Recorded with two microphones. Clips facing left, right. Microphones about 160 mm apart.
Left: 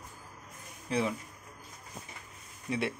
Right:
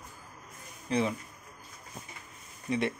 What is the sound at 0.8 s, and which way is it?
Speech, 5° left (ahead or behind).